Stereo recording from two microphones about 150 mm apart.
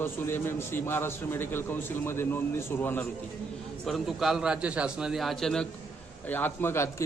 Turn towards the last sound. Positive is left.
turn(degrees=15)  # may be behind; listen again after turning